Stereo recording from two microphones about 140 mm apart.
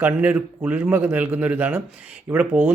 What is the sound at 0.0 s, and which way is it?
Speech, 10° right (ahead or behind).